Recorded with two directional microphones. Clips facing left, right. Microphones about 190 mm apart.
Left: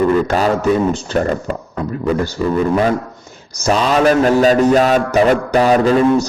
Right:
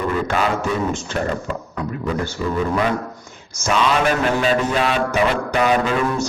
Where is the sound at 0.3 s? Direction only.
40° left (ahead or behind).